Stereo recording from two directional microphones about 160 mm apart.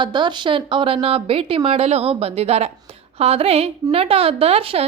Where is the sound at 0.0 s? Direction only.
30° right (ahead or behind).